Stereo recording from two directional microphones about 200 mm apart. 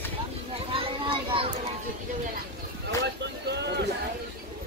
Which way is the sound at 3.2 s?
60° right (ahead or behind).